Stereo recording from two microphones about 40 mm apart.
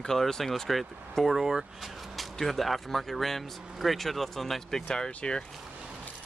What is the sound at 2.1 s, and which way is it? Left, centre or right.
Speech, centre.